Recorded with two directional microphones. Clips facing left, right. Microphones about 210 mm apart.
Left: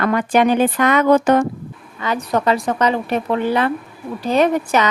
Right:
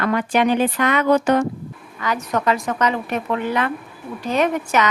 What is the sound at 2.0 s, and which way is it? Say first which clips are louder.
A woman's voice: left 3 dB; 30° left (ahead or behind).